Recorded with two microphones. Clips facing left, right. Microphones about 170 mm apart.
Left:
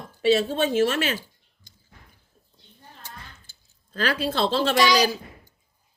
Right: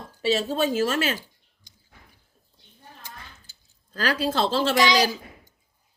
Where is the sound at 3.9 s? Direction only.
40° right (ahead or behind).